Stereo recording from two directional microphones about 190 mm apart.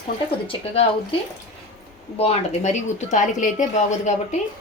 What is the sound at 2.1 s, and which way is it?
Speech, 35° left (ahead or behind).